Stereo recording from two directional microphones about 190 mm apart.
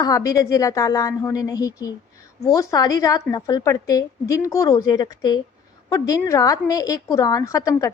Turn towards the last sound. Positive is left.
turn(degrees=15)  # may be behind; listen again after turning